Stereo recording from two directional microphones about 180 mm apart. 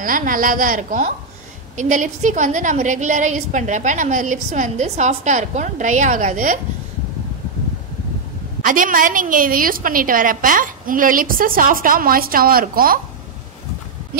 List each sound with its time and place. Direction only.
0.0 s a woman's voice: 50° right (ahead or behind)
8.6 s a woman's voice: 50° right (ahead or behind)